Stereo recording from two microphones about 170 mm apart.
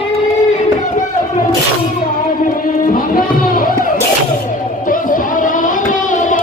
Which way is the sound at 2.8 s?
55° left (ahead or behind).